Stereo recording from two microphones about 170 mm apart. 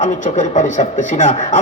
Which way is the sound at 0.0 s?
45° left (ahead or behind).